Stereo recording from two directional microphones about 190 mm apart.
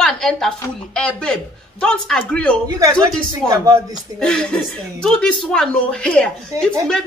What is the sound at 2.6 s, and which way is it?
Speech, 20° right (ahead or behind).